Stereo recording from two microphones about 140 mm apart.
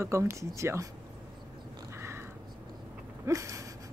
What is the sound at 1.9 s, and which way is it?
Cat, 20° right (ahead or behind).